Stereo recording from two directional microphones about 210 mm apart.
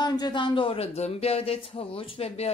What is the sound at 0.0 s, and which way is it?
Speech, 20° left (ahead or behind).